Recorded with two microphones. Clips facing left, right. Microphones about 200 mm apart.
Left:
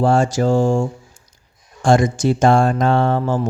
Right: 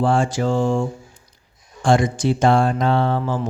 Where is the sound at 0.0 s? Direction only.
40° left (ahead or behind).